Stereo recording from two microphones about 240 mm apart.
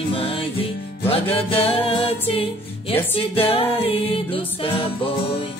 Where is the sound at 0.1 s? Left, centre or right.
Left.